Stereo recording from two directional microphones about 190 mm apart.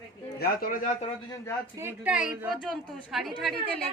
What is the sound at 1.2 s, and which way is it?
Speech, 15° left (ahead or behind).